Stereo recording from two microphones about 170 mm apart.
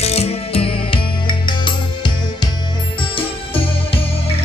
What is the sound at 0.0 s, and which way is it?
Music, 35° left (ahead or behind).